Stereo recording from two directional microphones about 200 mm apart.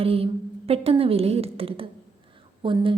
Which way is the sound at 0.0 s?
30° right (ahead or behind).